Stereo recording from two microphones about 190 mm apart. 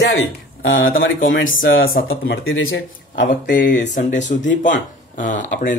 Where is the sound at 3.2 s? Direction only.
45° left (ahead or behind).